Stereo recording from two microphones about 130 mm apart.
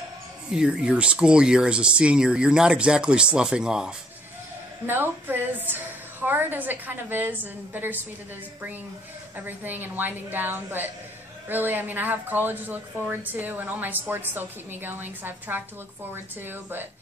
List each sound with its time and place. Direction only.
0.5 s a woman's voice: 5° right (ahead or behind)
9.4 s a woman's voice: 15° right (ahead or behind)